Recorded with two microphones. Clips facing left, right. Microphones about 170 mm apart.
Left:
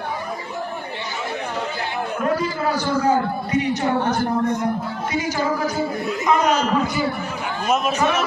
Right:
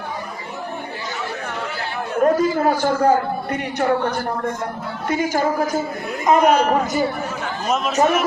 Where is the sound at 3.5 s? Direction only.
55° right (ahead or behind).